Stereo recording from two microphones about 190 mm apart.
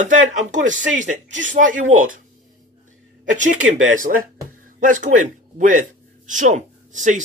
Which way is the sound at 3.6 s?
90° right.